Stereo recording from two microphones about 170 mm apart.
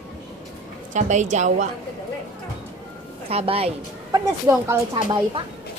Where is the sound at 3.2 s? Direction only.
35° right (ahead or behind).